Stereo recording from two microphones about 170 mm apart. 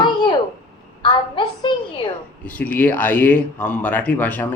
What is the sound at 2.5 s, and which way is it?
Speech, 10° left (ahead or behind).